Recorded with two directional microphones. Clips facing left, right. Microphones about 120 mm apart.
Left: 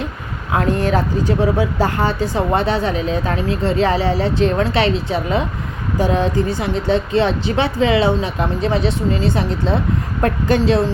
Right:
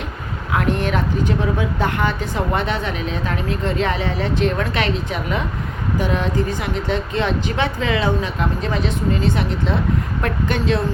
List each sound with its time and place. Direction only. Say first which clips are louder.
0.5 s a woman's voice: left 3 dB; 35° left (ahead or behind)